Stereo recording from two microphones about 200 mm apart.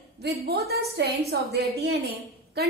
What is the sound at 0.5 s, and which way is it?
A woman's voice, 55° right (ahead or behind).